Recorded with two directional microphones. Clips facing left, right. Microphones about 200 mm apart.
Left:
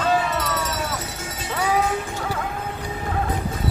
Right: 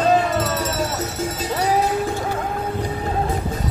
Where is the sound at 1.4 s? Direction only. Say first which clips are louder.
Right 2 dB; 35° right (ahead or behind).